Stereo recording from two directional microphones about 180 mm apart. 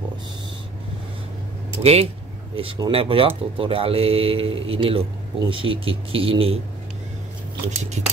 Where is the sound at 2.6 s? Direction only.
30° right (ahead or behind).